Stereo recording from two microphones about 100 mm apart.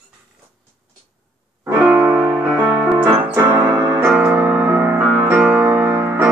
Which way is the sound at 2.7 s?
15° right (ahead or behind).